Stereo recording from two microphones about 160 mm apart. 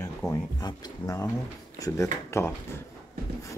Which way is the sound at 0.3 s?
25° left (ahead or behind).